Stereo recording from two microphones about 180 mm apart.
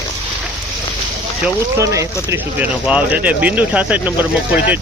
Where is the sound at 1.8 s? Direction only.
15° right (ahead or behind).